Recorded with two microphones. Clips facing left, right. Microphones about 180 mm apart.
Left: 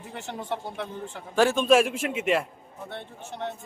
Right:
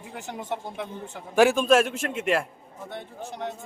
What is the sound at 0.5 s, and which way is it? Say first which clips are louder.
Speech: even; 15° right (ahead or behind).